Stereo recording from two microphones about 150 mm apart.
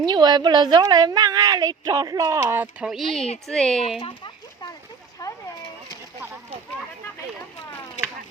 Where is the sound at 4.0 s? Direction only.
30° left (ahead or behind).